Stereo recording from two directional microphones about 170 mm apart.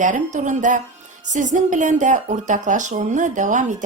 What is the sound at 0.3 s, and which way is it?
Speech, 45° right (ahead or behind).